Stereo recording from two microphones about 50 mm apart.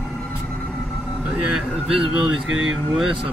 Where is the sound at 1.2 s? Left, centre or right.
Right.